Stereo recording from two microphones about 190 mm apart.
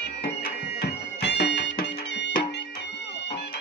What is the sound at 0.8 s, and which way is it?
Music, 60° left (ahead or behind).